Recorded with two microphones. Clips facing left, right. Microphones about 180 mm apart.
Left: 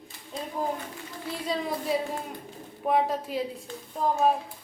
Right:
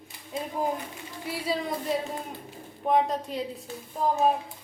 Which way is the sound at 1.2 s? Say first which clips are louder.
Right 1 dB; 10° right (ahead or behind).